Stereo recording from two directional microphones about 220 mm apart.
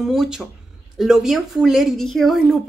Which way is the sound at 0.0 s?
Centre (ahead or behind).